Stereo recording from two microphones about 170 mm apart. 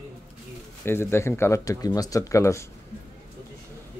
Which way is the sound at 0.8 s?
15° left (ahead or behind).